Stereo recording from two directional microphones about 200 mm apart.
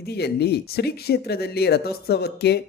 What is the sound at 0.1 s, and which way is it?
A man's voice, 55° left (ahead or behind).